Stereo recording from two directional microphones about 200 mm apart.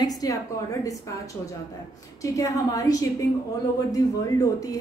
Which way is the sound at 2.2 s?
15° left (ahead or behind).